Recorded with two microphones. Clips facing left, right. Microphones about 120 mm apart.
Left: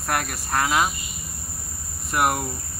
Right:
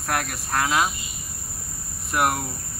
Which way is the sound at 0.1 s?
Centre (ahead or behind).